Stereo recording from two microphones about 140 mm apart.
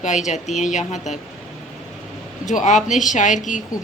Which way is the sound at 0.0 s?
60° left (ahead or behind).